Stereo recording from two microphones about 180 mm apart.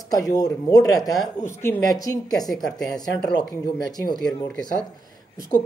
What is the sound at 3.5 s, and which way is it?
Speech, 20° left (ahead or behind).